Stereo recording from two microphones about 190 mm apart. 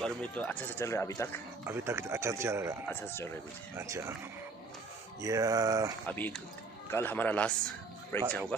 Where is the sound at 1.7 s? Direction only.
15° right (ahead or behind).